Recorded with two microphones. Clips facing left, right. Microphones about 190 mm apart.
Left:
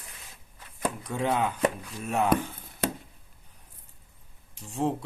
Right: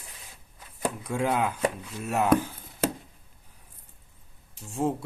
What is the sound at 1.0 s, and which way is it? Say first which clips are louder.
Speech: right 1 dB; centre (ahead or behind).